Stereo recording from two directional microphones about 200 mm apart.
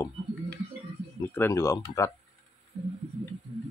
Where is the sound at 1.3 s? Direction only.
10° left (ahead or behind).